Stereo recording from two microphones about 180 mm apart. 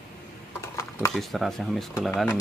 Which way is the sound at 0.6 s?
15° left (ahead or behind).